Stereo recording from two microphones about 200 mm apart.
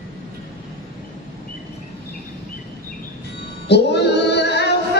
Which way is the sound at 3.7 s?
55° left (ahead or behind).